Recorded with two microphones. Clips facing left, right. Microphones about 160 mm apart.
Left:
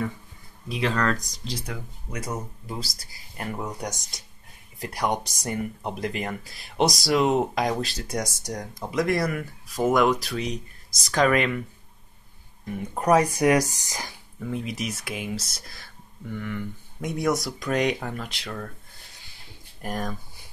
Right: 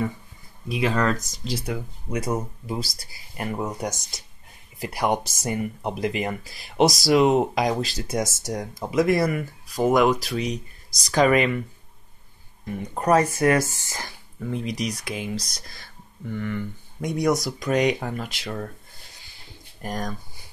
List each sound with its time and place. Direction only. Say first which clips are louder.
0.7 s speech: right 2 dB; 10° right (ahead or behind)
12.7 s speech: even; 5° left (ahead or behind)
14.5 s speech: right 3 dB; 5° left (ahead or behind)
19.8 s speech: even; 5° left (ahead or behind)